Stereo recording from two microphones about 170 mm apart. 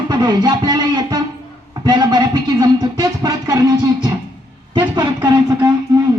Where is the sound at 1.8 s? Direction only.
25° right (ahead or behind).